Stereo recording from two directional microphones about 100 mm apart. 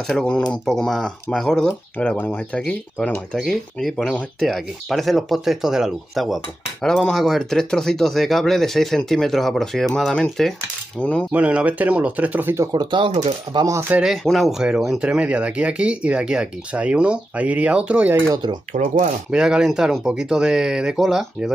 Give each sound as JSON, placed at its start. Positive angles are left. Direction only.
{"t": 0.0, "sound": "speech", "side_deg": 5}
{"t": 2.6, "sound": "speech", "side_deg": 5}
{"t": 11.3, "sound": "speech", "side_deg": -15}
{"t": 12.7, "sound": "speech", "side_deg": -55}
{"t": 14.0, "sound": "speech", "side_deg": 0}
{"t": 18.3, "sound": "speech", "side_deg": -45}
{"t": 19.3, "sound": "speech", "side_deg": -5}